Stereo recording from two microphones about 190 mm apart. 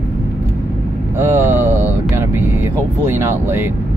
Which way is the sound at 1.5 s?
10° right (ahead or behind).